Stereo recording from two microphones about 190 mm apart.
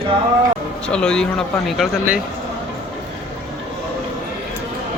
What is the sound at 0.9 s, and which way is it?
Speech, 5° left (ahead or behind).